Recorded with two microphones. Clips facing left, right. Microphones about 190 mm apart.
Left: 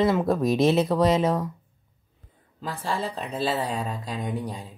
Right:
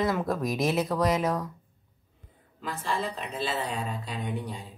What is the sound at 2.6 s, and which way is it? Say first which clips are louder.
Speech: left 2 dB; 35° left (ahead or behind).